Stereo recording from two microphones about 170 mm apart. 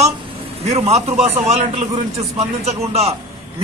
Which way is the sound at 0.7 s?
40° right (ahead or behind).